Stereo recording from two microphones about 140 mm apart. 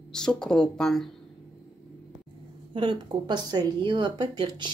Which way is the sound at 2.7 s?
35° right (ahead or behind).